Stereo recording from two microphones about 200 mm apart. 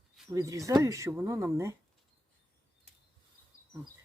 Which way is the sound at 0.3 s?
15° right (ahead or behind).